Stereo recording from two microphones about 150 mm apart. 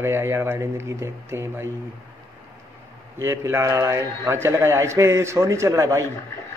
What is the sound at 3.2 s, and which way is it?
A man's voice, 15° right (ahead or behind).